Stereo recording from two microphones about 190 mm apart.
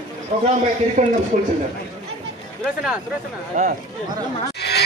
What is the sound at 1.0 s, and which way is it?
Speech, 40° right (ahead or behind).